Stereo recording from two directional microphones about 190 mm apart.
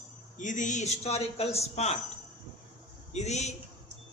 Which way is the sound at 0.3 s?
40° left (ahead or behind).